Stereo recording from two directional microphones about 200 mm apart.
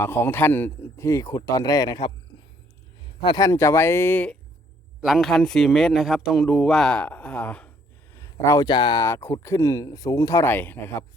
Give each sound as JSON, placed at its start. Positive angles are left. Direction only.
{"t": 0.0, "sound": "speech", "side_deg": 10}
{"t": 3.2, "sound": "speech", "side_deg": 20}